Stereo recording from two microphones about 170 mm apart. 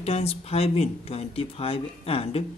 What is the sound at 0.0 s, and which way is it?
Speech, 35° left (ahead or behind).